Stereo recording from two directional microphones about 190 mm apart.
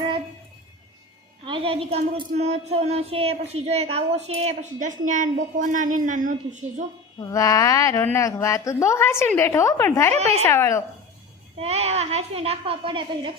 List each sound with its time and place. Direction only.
1.5 s a woman's voice: 25° right (ahead or behind)
7.3 s a woman's voice: 15° left (ahead or behind)
10.2 s speech: 35° right (ahead or behind)
10.5 s a woman's voice: 15° left (ahead or behind)
11.6 s speech: 35° right (ahead or behind)